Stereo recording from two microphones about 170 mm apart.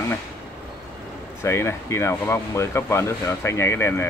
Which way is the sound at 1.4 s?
15° left (ahead or behind).